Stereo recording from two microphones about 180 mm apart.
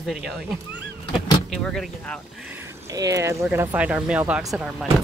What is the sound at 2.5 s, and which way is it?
Speech, 15° right (ahead or behind).